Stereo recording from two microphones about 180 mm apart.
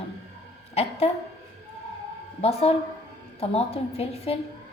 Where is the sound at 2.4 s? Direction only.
35° left (ahead or behind).